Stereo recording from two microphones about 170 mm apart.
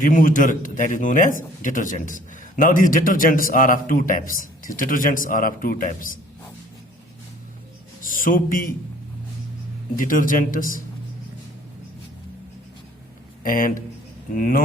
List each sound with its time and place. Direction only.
0.0 s a man's voice: 50° left (ahead or behind)
8.0 s speech: 55° left (ahead or behind)
9.9 s a man's voice: 55° left (ahead or behind)
13.4 s a man's voice: 55° left (ahead or behind)